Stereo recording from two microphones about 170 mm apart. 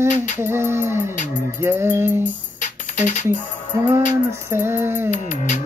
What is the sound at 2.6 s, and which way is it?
Music, 45° left (ahead or behind).